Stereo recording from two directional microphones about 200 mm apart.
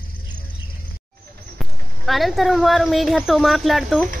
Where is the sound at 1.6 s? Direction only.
Centre (ahead or behind).